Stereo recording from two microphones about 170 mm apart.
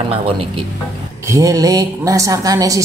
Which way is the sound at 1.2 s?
20° right (ahead or behind).